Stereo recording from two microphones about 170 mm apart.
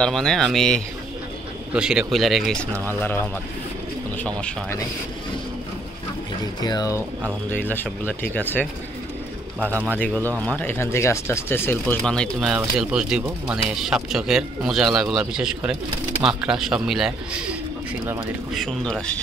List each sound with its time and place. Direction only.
0.0 s speech: 5° left (ahead or behind)
3.0 s speech: 15° left (ahead or behind)
4.4 s speech: 5° left (ahead or behind)
6.6 s speech: 25° left (ahead or behind)
7.5 s speech: 10° left (ahead or behind)
9.9 s speech: 10° left (ahead or behind)